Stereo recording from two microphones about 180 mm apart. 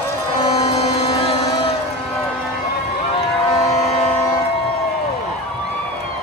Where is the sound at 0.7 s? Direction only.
35° left (ahead or behind).